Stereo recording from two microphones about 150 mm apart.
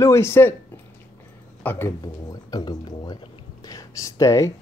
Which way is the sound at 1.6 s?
15° left (ahead or behind).